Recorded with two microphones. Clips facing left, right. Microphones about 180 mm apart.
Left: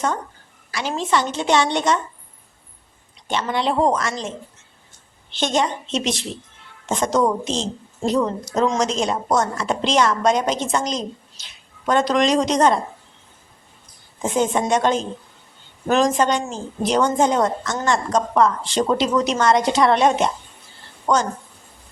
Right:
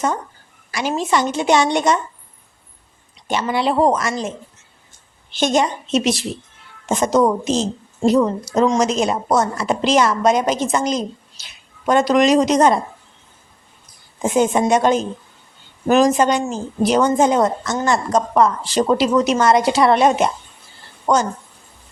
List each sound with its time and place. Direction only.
0.7 s speech: 10° right (ahead or behind)
3.2 s speech: 10° right (ahead or behind)
14.2 s speech: 10° right (ahead or behind)